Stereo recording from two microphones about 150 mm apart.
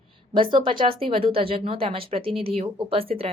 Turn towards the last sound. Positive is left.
turn(degrees=-40)  # may be behind; listen again after turning